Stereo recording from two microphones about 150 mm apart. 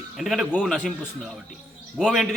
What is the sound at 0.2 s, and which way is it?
A man's voice, centre (ahead or behind).